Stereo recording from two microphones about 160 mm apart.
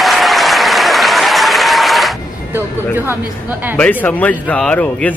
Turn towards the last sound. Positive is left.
turn(degrees=5)  # may be behind; listen again after turning